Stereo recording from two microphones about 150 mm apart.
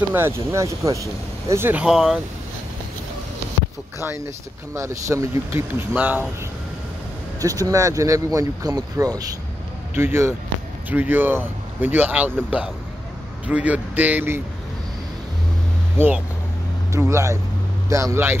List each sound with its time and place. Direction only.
0.1 s speech: 20° right (ahead or behind)
4.7 s speech: 20° right (ahead or behind)
7.3 s speech: 25° right (ahead or behind)
16.9 s speech: 20° right (ahead or behind)